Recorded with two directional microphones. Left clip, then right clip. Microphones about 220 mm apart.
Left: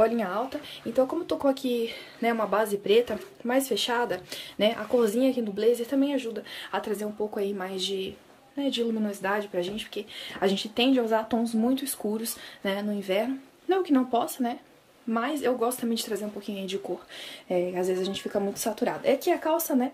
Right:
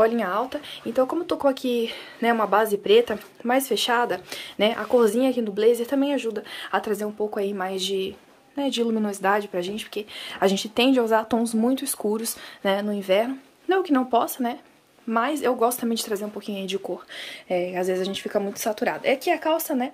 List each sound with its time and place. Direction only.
0.0 s speech: 10° right (ahead or behind)